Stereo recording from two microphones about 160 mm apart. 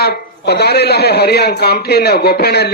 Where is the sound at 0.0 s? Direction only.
90° left.